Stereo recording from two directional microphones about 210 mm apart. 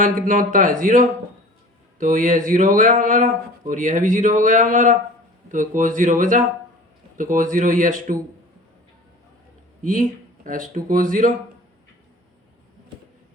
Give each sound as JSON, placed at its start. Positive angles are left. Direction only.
{"t": 0.0, "sound": "speech", "side_deg": -40}
{"t": 9.8, "sound": "speech", "side_deg": -40}